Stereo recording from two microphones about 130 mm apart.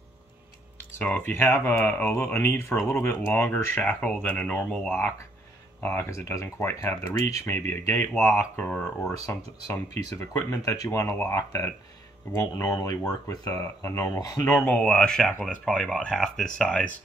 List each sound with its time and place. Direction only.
0.9 s speech: 15° left (ahead or behind); by 14.4 s 30° left (ahead or behind)
14.4 s speech: 15° left (ahead or behind)